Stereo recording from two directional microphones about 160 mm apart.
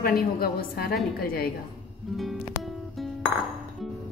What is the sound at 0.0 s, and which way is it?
A woman's voice, 70° left (ahead or behind).